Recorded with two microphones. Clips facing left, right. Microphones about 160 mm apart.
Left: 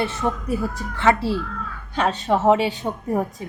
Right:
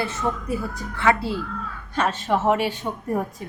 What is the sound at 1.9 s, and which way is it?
Speech, 20° left (ahead or behind).